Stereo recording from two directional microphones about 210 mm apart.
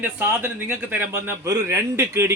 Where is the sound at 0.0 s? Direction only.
10° right (ahead or behind).